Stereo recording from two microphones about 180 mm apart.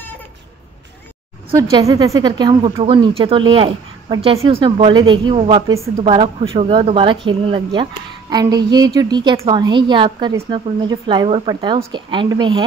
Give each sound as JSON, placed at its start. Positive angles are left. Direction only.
{"t": 1.6, "sound": "a woman's voice", "side_deg": -20}